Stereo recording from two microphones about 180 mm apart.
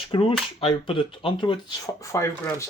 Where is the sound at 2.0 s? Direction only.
15° left (ahead or behind).